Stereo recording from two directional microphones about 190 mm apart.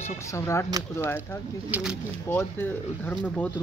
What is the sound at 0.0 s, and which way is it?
Speech, 15° left (ahead or behind).